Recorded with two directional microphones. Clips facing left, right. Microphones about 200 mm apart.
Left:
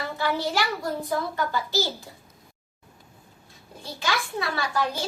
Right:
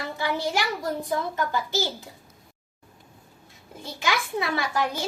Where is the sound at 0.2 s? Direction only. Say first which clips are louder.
Left 1 dB; 15° right (ahead or behind).